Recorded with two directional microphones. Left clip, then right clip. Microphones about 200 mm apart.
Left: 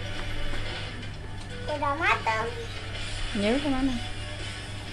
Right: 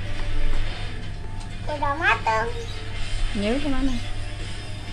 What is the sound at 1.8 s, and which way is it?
Speech, 5° right (ahead or behind).